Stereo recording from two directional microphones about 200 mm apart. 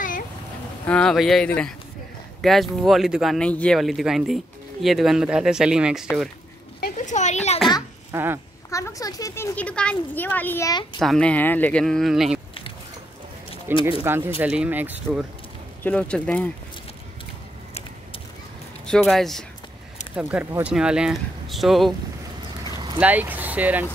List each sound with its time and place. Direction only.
0.8 s speech: 5° left (ahead or behind)
6.8 s a sound: 35° left (ahead or behind)
8.1 s speech: 10° right (ahead or behind)
8.6 s speech: 15° left (ahead or behind)
11.0 s speech: 5° left (ahead or behind)
13.7 s speech: 10° right (ahead or behind)
15.8 s speech: 5° left (ahead or behind)
18.9 s speech: centre (ahead or behind)
22.9 s speech: 10° right (ahead or behind)